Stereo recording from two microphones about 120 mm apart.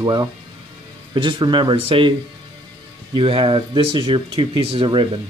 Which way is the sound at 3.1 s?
45° right (ahead or behind).